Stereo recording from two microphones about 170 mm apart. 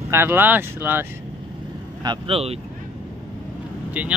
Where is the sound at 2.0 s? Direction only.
30° right (ahead or behind).